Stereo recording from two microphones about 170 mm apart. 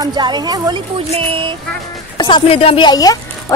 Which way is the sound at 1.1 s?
35° right (ahead or behind).